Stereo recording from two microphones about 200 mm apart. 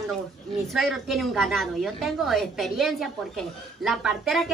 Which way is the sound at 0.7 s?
Centre (ahead or behind).